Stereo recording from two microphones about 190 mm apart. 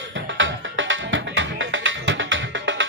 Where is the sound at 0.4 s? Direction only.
90° right.